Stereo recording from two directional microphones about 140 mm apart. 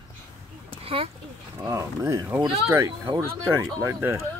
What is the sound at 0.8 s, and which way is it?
Speech, 45° right (ahead or behind).